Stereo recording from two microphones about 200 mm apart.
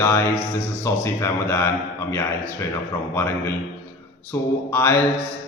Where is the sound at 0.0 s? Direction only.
10° left (ahead or behind).